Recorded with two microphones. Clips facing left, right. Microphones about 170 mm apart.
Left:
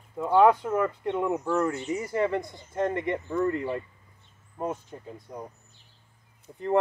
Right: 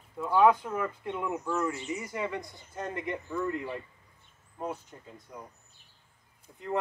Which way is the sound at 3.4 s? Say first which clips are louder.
Left 6 dB; 55° left (ahead or behind).